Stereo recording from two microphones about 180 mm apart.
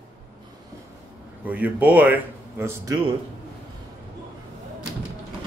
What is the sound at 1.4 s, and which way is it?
Speech, 10° right (ahead or behind).